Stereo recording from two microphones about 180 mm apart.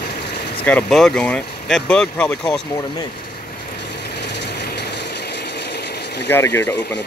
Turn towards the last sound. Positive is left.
turn(degrees=15)  # may be behind; listen again after turning